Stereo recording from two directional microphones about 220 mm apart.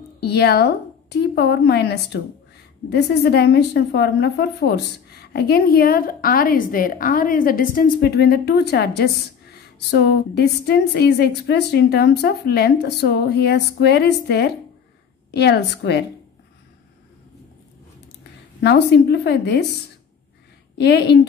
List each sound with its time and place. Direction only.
0.2 s a woman's voice: 45° left (ahead or behind)
18.6 s a woman's voice: 50° left (ahead or behind)
20.7 s a woman's voice: 50° left (ahead or behind)